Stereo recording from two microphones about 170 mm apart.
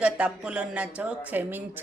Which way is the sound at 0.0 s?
5° right (ahead or behind).